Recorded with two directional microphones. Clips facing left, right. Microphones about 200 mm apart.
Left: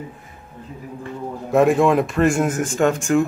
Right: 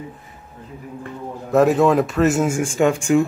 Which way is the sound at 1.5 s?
Centre (ahead or behind).